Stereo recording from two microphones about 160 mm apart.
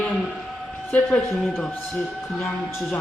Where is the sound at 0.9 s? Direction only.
10° left (ahead or behind).